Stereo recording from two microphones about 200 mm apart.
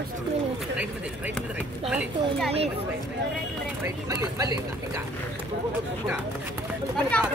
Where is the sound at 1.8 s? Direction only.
5° right (ahead or behind).